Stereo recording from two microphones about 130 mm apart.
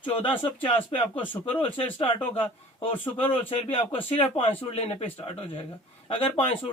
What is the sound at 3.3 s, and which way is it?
A man's voice, 45° left (ahead or behind).